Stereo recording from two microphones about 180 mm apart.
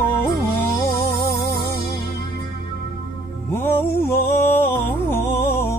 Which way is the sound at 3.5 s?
15° left (ahead or behind).